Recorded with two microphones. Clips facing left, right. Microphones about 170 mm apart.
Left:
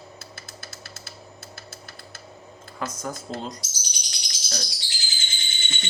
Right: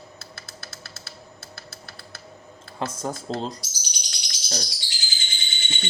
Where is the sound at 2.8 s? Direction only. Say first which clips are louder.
Right 2 dB; 30° right (ahead or behind).